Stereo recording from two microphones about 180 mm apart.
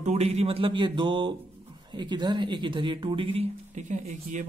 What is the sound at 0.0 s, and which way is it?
Speech, 40° right (ahead or behind).